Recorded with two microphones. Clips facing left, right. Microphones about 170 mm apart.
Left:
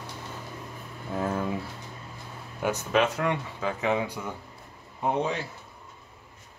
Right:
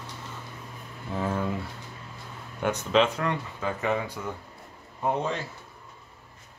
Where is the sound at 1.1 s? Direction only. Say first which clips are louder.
Even; 5° left (ahead or behind).